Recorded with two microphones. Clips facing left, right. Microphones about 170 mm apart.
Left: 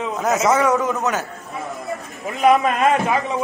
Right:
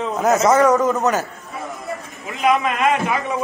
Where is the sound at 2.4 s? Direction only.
35° left (ahead or behind).